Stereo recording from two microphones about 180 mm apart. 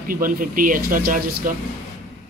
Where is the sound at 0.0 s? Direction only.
50° right (ahead or behind).